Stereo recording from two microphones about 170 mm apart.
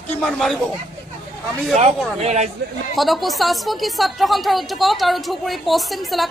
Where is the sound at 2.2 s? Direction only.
40° right (ahead or behind).